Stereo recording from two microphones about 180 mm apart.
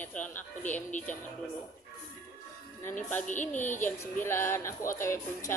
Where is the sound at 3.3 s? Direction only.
45° left (ahead or behind).